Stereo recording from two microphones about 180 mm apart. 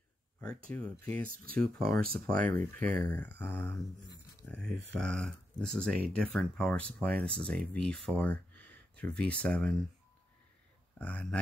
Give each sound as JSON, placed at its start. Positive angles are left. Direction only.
{"t": 0.7, "sound": "speech", "side_deg": 5}
{"t": 1.8, "sound": "speech", "side_deg": -55}
{"t": 2.4, "sound": "speech", "side_deg": 10}
{"t": 11.0, "sound": "speech", "side_deg": 10}